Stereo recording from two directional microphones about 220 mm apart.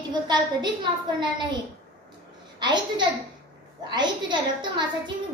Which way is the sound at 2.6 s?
20° right (ahead or behind).